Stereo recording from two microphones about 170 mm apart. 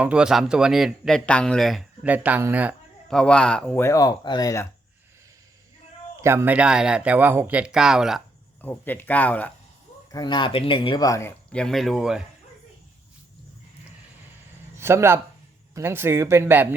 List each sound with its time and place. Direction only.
0.0 s speech: 5° right (ahead or behind)
3.1 s speech: 5° left (ahead or behind)
3.8 s speech: 20° left (ahead or behind)
6.2 s speech: 15° right (ahead or behind)
8.6 s speech: 10° left (ahead or behind)
10.1 s speech: 25° left (ahead or behind); by 12.2 s 5° right (ahead or behind)
14.8 s speech: 15° right (ahead or behind)